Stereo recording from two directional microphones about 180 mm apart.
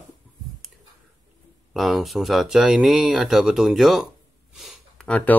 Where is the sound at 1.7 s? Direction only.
Centre (ahead or behind).